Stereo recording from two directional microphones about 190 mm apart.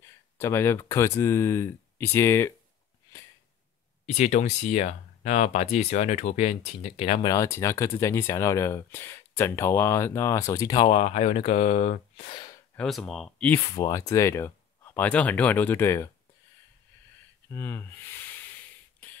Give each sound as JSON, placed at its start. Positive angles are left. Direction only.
{"t": 0.0, "sound": "speech", "side_deg": 15}
{"t": 4.0, "sound": "speech", "side_deg": 35}
{"t": 7.2, "sound": "speech", "side_deg": 15}
{"t": 10.9, "sound": "speech", "side_deg": 35}
{"t": 12.7, "sound": "speech", "side_deg": 5}
{"t": 13.7, "sound": "speech", "side_deg": 15}
{"t": 17.5, "sound": "speech", "side_deg": 15}
{"t": 18.4, "sound": "a sound", "side_deg": 10}